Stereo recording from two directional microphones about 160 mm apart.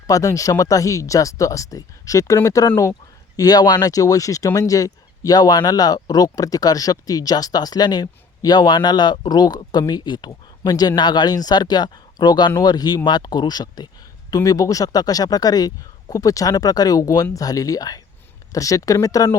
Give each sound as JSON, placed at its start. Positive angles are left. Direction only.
{"t": 0.1, "sound": "speech", "side_deg": 20}